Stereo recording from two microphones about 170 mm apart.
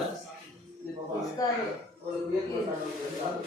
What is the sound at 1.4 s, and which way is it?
Speech, 20° left (ahead or behind).